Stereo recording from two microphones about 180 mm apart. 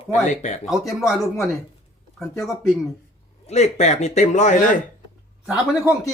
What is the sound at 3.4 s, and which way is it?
A man's voice, 40° left (ahead or behind).